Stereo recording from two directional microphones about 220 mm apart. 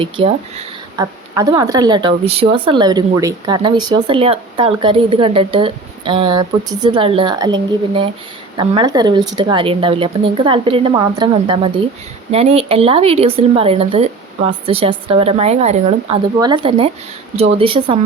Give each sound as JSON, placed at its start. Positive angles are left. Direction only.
{"t": 0.0, "sound": "speech", "side_deg": -25}
{"t": 8.5, "sound": "speech", "side_deg": -20}